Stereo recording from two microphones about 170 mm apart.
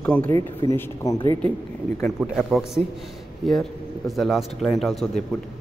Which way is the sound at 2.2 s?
Centre (ahead or behind).